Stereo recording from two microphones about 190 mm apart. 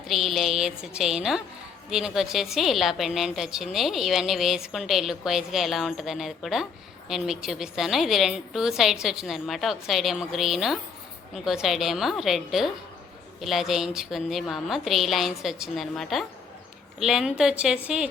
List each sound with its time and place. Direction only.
0.1 s a woman's voice: centre (ahead or behind)